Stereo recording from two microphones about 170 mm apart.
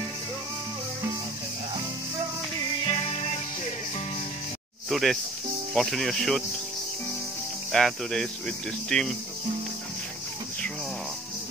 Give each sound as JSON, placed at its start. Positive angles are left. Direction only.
{"t": 2.8, "sound": "music", "side_deg": 30}
{"t": 4.8, "sound": "speech", "side_deg": 0}
{"t": 7.7, "sound": "speech", "side_deg": 0}